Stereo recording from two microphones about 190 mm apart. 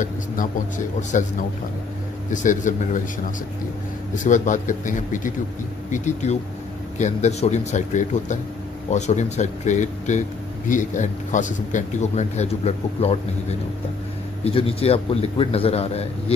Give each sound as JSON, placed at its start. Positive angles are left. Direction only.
{"t": 0.0, "sound": "speech", "side_deg": 40}
{"t": 2.3, "sound": "speech", "side_deg": 40}
{"t": 4.1, "sound": "speech", "side_deg": 40}